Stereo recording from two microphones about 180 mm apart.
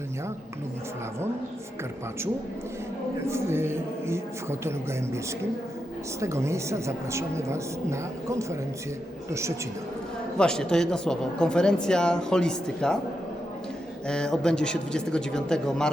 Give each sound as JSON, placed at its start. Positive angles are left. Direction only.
{"t": 3.2, "sound": "a woman's voice", "side_deg": -15}
{"t": 10.3, "sound": "speech", "side_deg": 5}
{"t": 14.1, "sound": "speech", "side_deg": 5}